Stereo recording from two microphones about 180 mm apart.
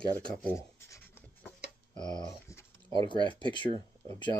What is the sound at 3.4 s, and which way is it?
Speech, 25° left (ahead or behind).